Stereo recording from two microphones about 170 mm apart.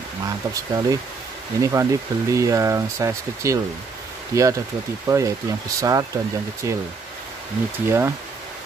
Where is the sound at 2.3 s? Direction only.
20° right (ahead or behind).